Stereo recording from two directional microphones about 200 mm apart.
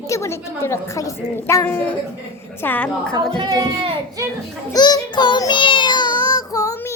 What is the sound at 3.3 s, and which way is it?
Speech, 20° right (ahead or behind).